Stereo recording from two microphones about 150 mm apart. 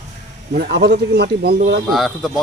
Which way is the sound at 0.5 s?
90° right.